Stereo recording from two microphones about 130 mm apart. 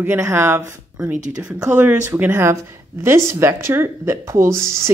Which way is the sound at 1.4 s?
10° right (ahead or behind).